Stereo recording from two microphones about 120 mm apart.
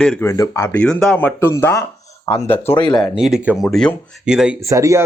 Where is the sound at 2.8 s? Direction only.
35° left (ahead or behind).